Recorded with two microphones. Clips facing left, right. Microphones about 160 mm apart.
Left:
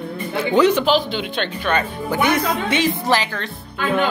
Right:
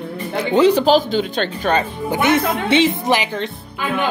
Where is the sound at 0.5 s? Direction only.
30° right (ahead or behind).